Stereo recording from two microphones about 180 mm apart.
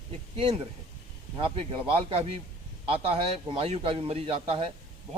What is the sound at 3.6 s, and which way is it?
A man's voice, 35° right (ahead or behind).